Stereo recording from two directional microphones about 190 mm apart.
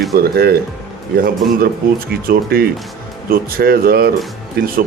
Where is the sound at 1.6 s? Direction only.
50° right (ahead or behind).